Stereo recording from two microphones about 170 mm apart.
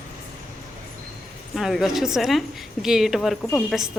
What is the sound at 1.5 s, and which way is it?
A woman's voice, centre (ahead or behind).